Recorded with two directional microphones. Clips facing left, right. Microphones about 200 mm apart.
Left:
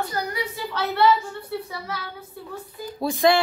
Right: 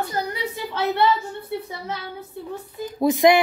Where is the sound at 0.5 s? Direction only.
20° right (ahead or behind).